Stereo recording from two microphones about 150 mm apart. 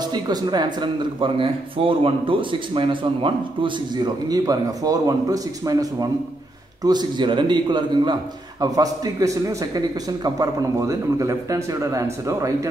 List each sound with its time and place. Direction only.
0.0 s speech: 30° right (ahead or behind)